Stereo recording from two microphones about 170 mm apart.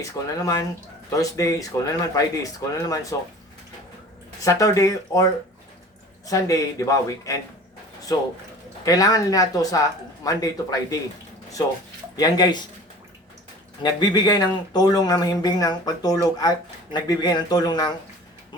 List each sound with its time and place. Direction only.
0.0 s speech: 20° left (ahead or behind)
4.4 s speech: 20° left (ahead or behind)
12.1 s speech: 25° left (ahead or behind)
13.8 s speech: 25° left (ahead or behind)